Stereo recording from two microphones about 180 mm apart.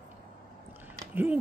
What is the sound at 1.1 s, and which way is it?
Speech, 10° right (ahead or behind).